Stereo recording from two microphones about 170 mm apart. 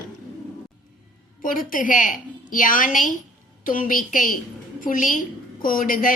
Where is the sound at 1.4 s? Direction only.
55° left (ahead or behind).